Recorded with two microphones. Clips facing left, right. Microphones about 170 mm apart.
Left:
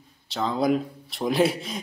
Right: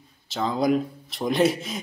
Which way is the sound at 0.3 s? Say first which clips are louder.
Right 1 dB; centre (ahead or behind).